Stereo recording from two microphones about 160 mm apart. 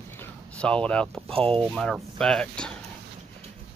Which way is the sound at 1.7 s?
Centre (ahead or behind).